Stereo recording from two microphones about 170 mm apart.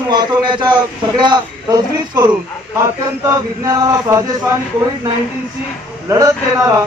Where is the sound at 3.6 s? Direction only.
20° right (ahead or behind).